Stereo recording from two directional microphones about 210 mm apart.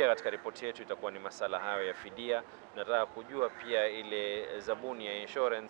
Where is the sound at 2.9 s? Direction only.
20° right (ahead or behind).